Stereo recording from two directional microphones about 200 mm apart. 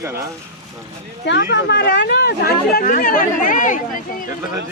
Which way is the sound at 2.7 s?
45° left (ahead or behind).